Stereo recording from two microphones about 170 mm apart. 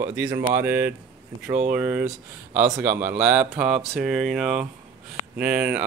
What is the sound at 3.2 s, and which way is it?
Speech, 5° right (ahead or behind).